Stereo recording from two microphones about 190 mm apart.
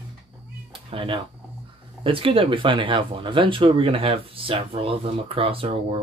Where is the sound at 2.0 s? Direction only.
30° right (ahead or behind).